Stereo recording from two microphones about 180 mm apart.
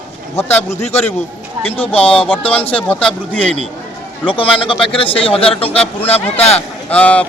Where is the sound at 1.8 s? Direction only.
30° left (ahead or behind).